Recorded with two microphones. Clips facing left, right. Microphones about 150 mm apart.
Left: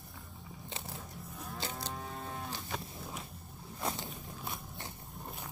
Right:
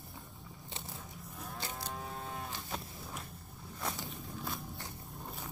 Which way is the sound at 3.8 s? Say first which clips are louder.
Left 2 dB; 25° left (ahead or behind).